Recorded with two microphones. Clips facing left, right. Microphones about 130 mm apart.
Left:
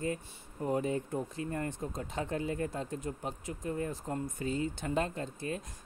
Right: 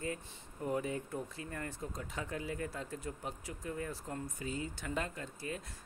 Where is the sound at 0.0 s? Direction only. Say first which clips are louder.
Left 5 dB; 30° left (ahead or behind).